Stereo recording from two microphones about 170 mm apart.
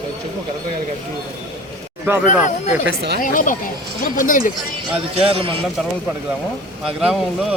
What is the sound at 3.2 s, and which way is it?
Speech, 50° left (ahead or behind).